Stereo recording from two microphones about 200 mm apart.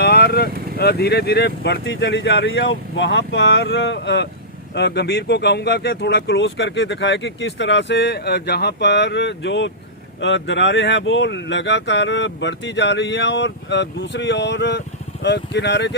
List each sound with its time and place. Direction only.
0.0 s speech: 55° left (ahead or behind)